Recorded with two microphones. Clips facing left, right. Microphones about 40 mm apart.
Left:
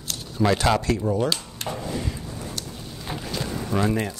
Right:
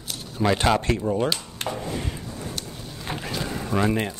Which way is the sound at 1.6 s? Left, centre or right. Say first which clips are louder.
Right 4 dB; right.